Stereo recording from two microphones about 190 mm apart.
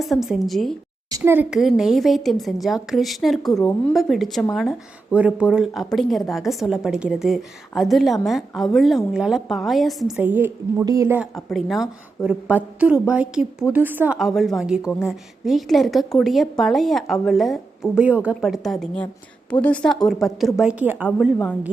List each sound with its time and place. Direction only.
0.0 s speech: centre (ahead or behind)
1.1 s speech: 10° right (ahead or behind)
3.6 s a woman's voice: 10° left (ahead or behind)
3.9 s speech: centre (ahead or behind)
11.3 s speech: centre (ahead or behind)